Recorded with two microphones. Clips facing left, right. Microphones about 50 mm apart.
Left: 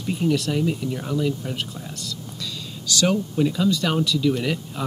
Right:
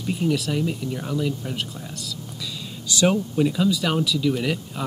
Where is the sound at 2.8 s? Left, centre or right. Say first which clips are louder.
Right 1 dB; centre.